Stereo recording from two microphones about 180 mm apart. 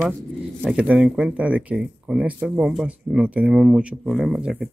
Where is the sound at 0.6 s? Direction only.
5° right (ahead or behind).